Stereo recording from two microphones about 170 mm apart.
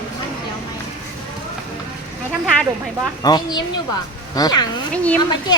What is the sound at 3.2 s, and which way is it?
A child's voice, 25° left (ahead or behind).